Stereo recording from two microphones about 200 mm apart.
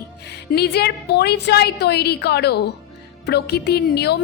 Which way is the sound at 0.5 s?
55° left (ahead or behind).